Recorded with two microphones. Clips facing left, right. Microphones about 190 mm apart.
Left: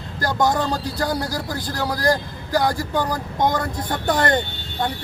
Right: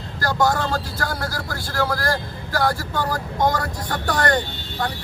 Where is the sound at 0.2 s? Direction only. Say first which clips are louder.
Even; 20° left (ahead or behind).